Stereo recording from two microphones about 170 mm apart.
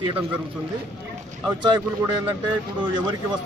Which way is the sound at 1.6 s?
25° right (ahead or behind).